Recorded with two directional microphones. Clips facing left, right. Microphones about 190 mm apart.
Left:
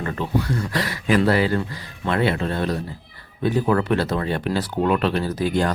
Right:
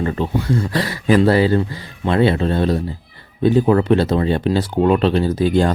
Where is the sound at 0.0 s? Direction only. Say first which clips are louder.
Right 4 dB; 25° right (ahead or behind).